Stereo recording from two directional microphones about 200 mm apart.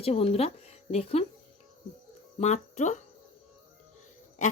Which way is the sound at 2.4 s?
35° left (ahead or behind).